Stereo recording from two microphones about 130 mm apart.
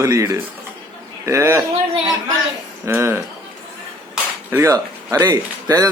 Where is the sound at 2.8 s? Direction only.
20° right (ahead or behind).